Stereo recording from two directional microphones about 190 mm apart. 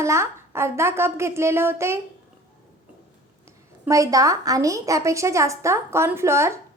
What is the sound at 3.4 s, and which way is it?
A woman's voice, 15° right (ahead or behind).